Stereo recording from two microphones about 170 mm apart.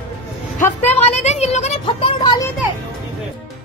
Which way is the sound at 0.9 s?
40° left (ahead or behind).